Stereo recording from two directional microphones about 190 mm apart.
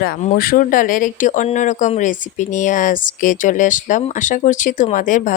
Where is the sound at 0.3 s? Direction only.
50° left (ahead or behind).